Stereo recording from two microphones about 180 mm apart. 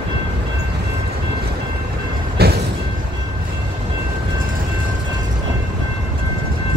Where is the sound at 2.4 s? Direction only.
60° right (ahead or behind).